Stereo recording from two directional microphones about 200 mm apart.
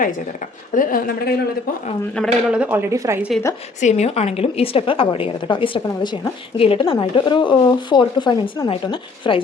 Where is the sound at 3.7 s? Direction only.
35° left (ahead or behind).